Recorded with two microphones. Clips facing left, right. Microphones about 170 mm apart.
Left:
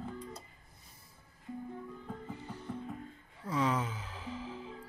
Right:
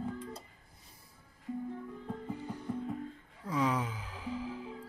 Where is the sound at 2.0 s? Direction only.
15° right (ahead or behind).